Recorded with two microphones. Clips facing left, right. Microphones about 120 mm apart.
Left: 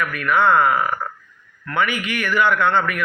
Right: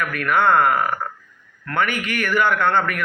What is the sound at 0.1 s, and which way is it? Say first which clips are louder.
Speech: even; 50° right (ahead or behind).